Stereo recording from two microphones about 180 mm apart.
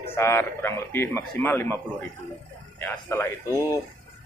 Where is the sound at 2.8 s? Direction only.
10° left (ahead or behind).